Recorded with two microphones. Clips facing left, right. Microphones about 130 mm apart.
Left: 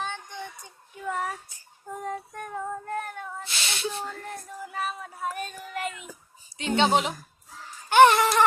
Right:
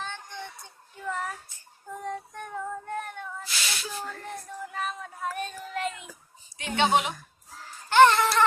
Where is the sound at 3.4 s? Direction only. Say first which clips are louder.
Left 4 dB; 25° left (ahead or behind).